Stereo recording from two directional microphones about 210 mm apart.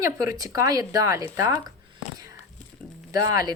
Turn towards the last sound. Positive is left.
turn(degrees=-15)  # may be behind; listen again after turning